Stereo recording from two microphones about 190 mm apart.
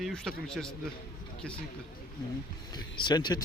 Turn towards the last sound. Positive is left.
turn(degrees=20)  # may be behind; listen again after turning